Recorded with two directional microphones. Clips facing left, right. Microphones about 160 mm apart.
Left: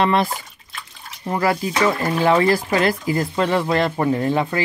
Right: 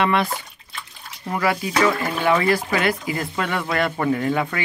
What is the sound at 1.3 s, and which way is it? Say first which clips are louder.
Speech: left 1 dB; 35° left (ahead or behind).